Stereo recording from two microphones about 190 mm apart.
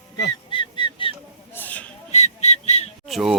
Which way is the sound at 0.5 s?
25° left (ahead or behind).